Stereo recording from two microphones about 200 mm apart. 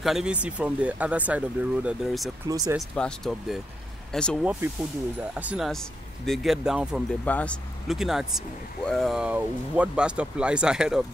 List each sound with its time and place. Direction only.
0.0 s speech: centre (ahead or behind)
2.4 s speech: 15° right (ahead or behind)
3.0 s speech: centre (ahead or behind)
7.2 s speech: 5° left (ahead or behind)